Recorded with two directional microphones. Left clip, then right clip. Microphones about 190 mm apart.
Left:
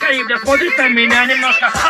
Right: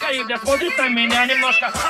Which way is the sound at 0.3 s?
Centre (ahead or behind).